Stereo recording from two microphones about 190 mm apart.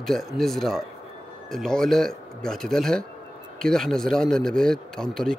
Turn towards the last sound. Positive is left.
turn(degrees=0)  # may be behind; listen again after turning